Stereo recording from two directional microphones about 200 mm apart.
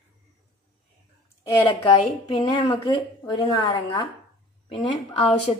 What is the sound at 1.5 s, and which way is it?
A woman's voice, 15° left (ahead or behind).